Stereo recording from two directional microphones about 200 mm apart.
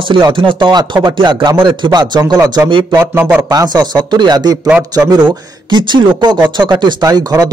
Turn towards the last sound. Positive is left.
turn(degrees=-20)  # may be behind; listen again after turning